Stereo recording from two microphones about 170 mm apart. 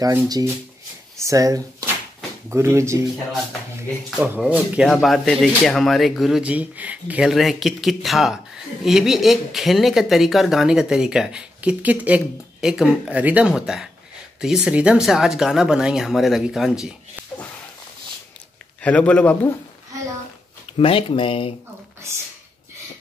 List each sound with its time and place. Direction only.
0.0 s speech: 20° right (ahead or behind)
4.2 s speech: 10° right (ahead or behind)
18.8 s a man's voice: 10° left (ahead or behind)
20.7 s speech: 30° left (ahead or behind)